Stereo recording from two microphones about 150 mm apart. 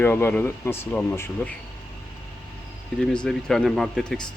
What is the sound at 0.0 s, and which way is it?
Speech, 15° left (ahead or behind).